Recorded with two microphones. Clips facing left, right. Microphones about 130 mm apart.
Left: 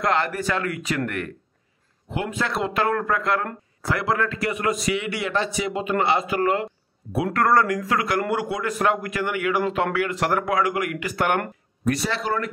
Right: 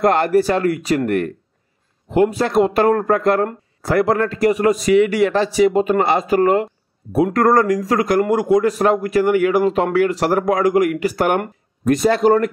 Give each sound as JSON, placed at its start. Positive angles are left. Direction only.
{"t": 0.0, "sound": "a man's voice", "side_deg": -45}